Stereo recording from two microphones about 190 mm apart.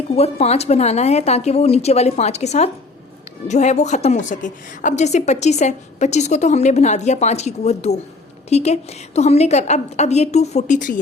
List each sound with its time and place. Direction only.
0.2 s a woman's voice: 35° left (ahead or behind)